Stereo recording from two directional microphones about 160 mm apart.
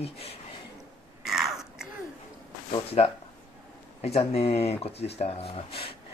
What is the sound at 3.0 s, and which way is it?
Speech, 45° left (ahead or behind).